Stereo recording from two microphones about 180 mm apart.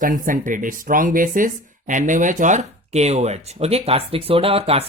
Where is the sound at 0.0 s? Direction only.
50° right (ahead or behind).